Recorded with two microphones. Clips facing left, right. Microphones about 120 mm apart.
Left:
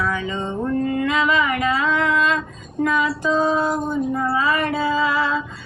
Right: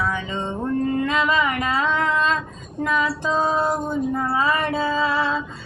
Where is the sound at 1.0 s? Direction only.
30° right (ahead or behind).